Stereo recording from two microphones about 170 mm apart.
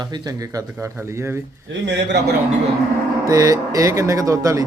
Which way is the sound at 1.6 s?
90° right.